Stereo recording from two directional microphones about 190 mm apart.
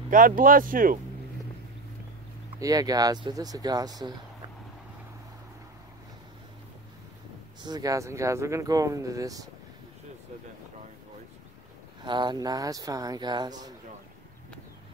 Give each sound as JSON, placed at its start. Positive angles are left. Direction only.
{"t": 0.1, "sound": "speech", "side_deg": -45}
{"t": 2.6, "sound": "speech", "side_deg": -20}
{"t": 7.6, "sound": "speech", "side_deg": -20}
{"t": 12.0, "sound": "speech", "side_deg": -25}